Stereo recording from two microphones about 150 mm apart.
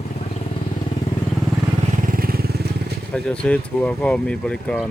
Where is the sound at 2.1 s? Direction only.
80° right.